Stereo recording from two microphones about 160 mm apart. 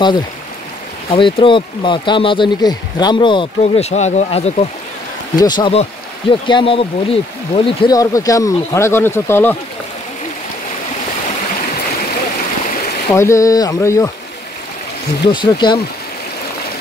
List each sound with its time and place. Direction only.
1.1 s speech: 30° left (ahead or behind)
5.3 s speech: 25° left (ahead or behind)
13.1 s speech: 20° left (ahead or behind)
15.2 s speech: 30° left (ahead or behind)